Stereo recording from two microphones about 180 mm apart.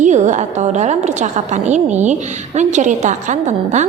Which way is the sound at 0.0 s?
40° right (ahead or behind).